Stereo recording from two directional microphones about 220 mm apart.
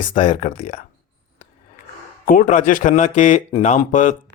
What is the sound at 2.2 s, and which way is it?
Speech, 40° left (ahead or behind).